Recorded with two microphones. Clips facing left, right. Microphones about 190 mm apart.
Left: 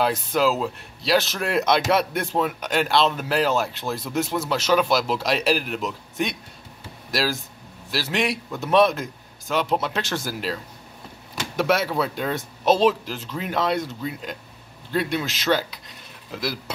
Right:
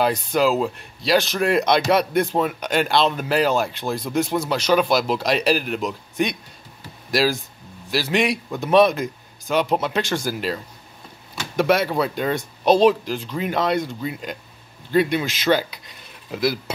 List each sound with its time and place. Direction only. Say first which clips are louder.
0.0 s speech: right 2 dB; centre (ahead or behind)